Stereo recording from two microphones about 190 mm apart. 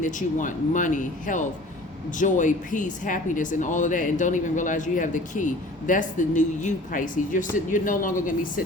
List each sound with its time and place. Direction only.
0.0 s speech: 40° left (ahead or behind)